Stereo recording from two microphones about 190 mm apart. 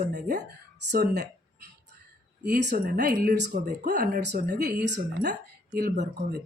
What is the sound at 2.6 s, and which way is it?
Speech, 45° right (ahead or behind).